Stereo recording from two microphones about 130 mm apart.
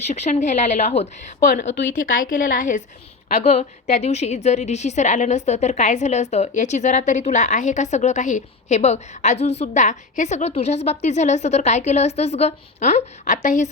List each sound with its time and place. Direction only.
0.1 s a woman's voice: 65° left (ahead or behind)
2.1 s a woman's voice: 90° left
3.2 s a woman's voice: 65° left (ahead or behind)